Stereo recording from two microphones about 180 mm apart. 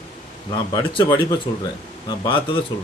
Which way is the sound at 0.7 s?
25° left (ahead or behind).